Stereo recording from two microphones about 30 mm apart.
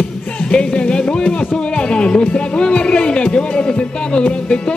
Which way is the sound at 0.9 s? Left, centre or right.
Left.